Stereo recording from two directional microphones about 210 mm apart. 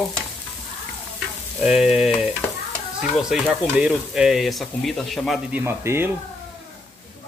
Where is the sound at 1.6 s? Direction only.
Centre (ahead or behind).